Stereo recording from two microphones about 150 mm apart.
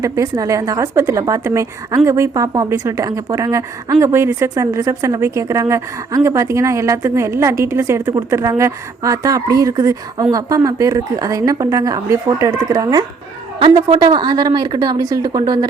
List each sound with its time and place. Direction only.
0.0 s speech: 20° right (ahead or behind)